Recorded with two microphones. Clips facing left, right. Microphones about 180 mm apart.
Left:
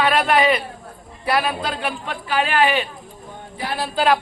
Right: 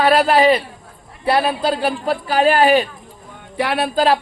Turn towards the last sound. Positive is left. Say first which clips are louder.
# right 7 dB
turn(degrees=-70)  # may be behind; listen again after turning